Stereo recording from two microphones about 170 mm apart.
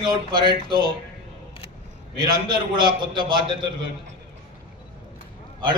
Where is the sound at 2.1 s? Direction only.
25° right (ahead or behind).